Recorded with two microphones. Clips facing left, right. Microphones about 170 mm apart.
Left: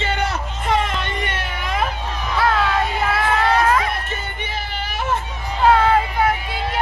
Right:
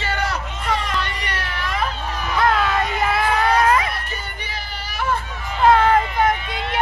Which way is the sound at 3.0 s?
Centre (ahead or behind).